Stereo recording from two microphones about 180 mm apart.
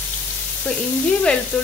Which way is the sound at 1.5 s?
10° left (ahead or behind).